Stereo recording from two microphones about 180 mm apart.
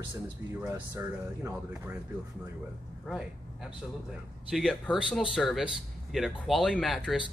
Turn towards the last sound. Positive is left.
turn(degrees=0)  # may be behind; listen again after turning